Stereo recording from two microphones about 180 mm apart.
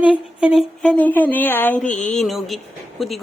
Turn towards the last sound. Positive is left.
turn(degrees=0)  # may be behind; listen again after turning